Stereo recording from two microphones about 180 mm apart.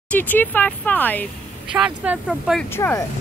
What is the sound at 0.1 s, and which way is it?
Speech, 10° left (ahead or behind).